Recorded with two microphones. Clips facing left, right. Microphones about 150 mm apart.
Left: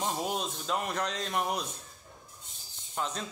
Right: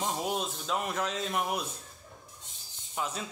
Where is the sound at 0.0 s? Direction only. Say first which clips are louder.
Even; centre (ahead or behind).